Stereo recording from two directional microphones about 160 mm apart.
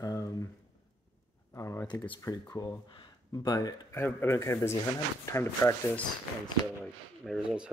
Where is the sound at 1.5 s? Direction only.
15° left (ahead or behind).